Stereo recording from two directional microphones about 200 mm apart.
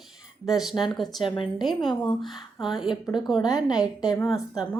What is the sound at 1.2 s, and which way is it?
Speech, 25° left (ahead or behind).